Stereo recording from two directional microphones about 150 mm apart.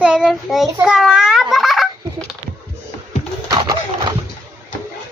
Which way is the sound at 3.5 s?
25° right (ahead or behind).